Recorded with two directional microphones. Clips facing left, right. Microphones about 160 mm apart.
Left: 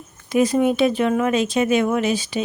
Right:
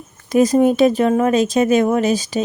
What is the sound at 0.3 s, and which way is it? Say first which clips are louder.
Speech: right 4 dB; 40° right (ahead or behind).